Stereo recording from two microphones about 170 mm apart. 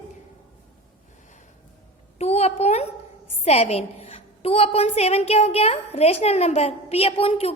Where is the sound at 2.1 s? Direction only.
40° left (ahead or behind).